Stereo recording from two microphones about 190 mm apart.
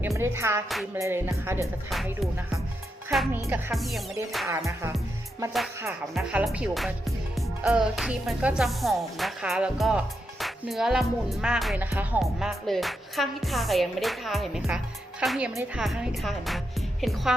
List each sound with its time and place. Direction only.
0.2 s music: 15° right (ahead or behind)
3.1 s speech: centre (ahead or behind)
3.4 s music: 15° right (ahead or behind)
3.8 s speech: centre (ahead or behind)
4.4 s music: 15° right (ahead or behind)
6.1 s speech: 5° right (ahead or behind)